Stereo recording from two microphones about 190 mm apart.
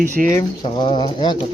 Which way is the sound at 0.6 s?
25° left (ahead or behind).